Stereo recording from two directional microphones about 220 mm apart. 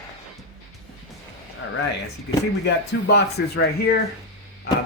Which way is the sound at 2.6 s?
50° left (ahead or behind).